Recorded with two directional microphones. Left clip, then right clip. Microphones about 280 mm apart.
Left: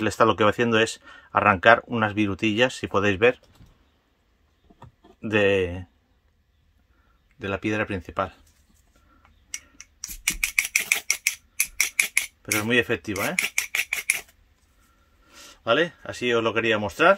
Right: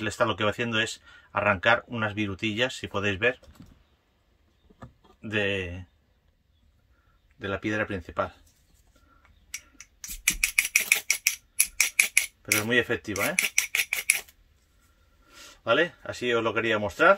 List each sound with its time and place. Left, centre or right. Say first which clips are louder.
0.0 s speech: left 6 dB; centre
5.2 s speech: left 7 dB; centre
7.3 s speech: left 3 dB; centre
9.8 s a sound: left 3 dB; centre
11.8 s cutlery: even; centre
15.2 s speech: left 2 dB; centre